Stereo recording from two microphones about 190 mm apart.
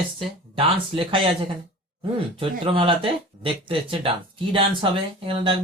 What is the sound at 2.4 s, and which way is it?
Speech, 25° right (ahead or behind).